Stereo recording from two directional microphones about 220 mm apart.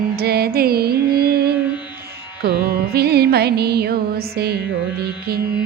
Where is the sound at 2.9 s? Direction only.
45° right (ahead or behind).